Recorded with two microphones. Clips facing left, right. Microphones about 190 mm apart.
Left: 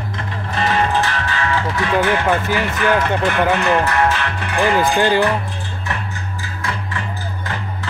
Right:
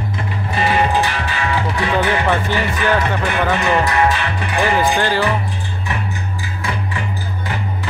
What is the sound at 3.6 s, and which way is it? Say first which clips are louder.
Music: even; 15° right (ahead or behind).